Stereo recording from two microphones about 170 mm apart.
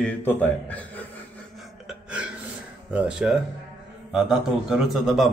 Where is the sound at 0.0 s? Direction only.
10° left (ahead or behind).